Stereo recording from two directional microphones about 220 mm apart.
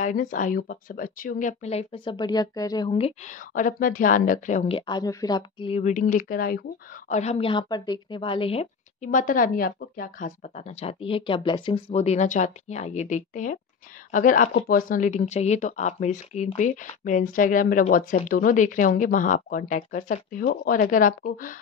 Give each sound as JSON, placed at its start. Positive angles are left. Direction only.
{"t": 0.0, "sound": "speech", "side_deg": 35}
{"t": 7.1, "sound": "speech", "side_deg": 30}